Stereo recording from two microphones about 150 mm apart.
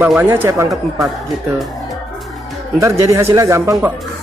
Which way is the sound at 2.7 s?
20° right (ahead or behind).